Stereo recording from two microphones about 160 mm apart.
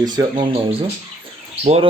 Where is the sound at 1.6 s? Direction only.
40° right (ahead or behind).